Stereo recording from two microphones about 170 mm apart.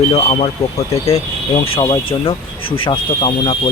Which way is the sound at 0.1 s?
35° left (ahead or behind).